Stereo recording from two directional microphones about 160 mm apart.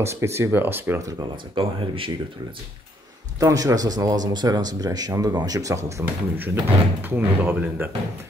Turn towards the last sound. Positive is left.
turn(degrees=-10)  # may be behind; listen again after turning